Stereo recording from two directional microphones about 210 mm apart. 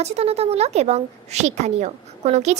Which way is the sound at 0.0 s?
30° right (ahead or behind).